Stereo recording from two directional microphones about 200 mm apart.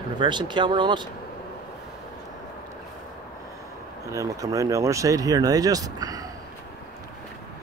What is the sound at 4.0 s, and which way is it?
Speech, 15° right (ahead or behind).